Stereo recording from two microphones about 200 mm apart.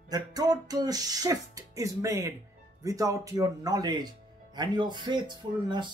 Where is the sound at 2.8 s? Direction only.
15° right (ahead or behind).